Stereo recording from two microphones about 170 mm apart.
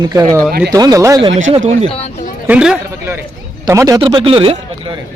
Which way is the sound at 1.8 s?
35° left (ahead or behind).